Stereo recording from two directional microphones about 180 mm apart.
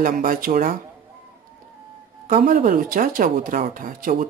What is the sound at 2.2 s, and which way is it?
Speech, 50° right (ahead or behind).